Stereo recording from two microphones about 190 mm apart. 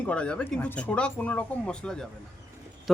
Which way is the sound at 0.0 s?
5° left (ahead or behind).